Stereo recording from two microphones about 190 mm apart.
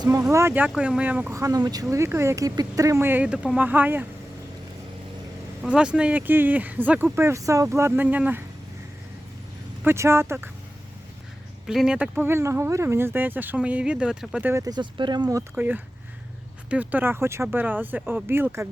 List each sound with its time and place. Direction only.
0.2 s speech: 15° right (ahead or behind)
5.6 s speech: 5° right (ahead or behind)
9.8 s speech: 15° right (ahead or behind)
11.6 s speech: centre (ahead or behind)
14.5 s speech: 20° right (ahead or behind)